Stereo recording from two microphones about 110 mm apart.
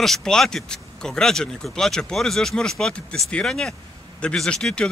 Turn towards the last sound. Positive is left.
turn(degrees=10)  # may be behind; listen again after turning